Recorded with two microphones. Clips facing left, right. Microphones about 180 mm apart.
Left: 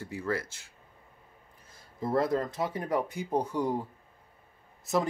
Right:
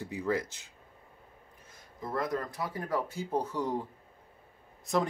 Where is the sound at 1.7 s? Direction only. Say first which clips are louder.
Left 7 dB; 30° left (ahead or behind); by 3.8 s 10° left (ahead or behind).